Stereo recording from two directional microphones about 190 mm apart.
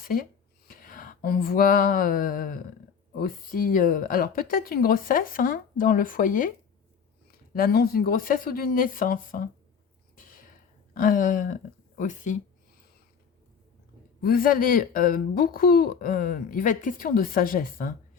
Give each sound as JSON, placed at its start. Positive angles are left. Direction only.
{"t": 0.0, "sound": "speech", "side_deg": 50}
{"t": 0.7, "sound": "a sound", "side_deg": 50}
{"t": 3.2, "sound": "speech", "side_deg": 50}
{"t": 10.2, "sound": "a sound", "side_deg": 45}
{"t": 10.9, "sound": "speech", "side_deg": 45}
{"t": 14.2, "sound": "speech", "side_deg": 50}